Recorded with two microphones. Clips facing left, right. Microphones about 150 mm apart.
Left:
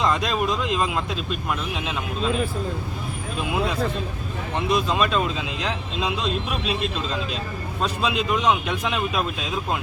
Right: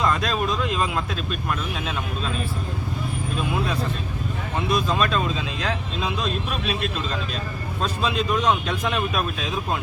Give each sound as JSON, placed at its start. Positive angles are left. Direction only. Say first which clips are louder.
{"t": 0.0, "sound": "speech", "louder": "left 1 dB", "side_deg": 15}
{"t": 4.7, "sound": "speech", "louder": "left 1 dB", "side_deg": 15}